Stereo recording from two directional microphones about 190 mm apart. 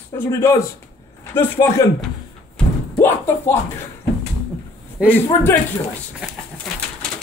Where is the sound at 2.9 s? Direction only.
10° left (ahead or behind).